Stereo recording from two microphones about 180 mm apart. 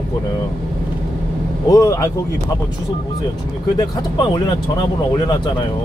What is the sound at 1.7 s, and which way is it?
Speech, 20° left (ahead or behind).